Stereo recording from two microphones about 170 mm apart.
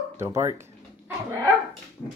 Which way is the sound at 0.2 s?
15° right (ahead or behind).